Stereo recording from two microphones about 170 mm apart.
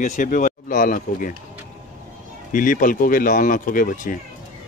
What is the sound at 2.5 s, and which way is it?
Speech, 50° left (ahead or behind).